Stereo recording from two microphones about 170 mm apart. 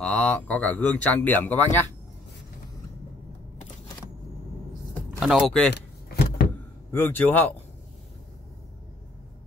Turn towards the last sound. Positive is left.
turn(degrees=10)  # may be behind; listen again after turning